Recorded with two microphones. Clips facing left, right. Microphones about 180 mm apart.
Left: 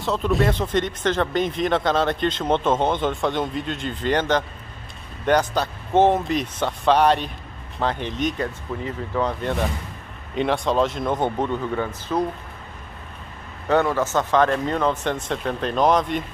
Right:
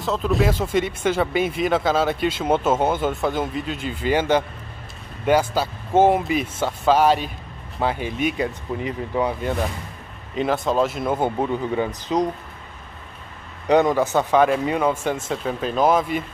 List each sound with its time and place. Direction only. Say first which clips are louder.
0.0 s speech: even; centre (ahead or behind); by 12.2 s 15° right (ahead or behind)
13.7 s speech: right 3 dB; 15° right (ahead or behind)